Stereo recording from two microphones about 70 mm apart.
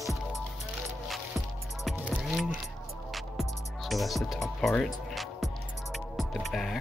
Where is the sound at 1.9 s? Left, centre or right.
Right.